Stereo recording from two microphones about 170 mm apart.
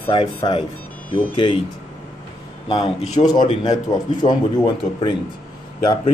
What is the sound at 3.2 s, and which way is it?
Speech, 40° left (ahead or behind).